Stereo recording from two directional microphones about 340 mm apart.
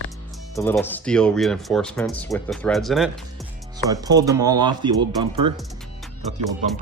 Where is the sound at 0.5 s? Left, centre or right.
Centre.